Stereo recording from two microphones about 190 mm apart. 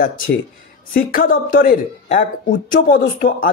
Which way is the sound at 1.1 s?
45° left (ahead or behind).